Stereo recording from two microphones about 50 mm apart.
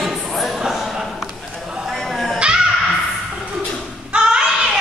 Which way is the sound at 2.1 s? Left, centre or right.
Centre.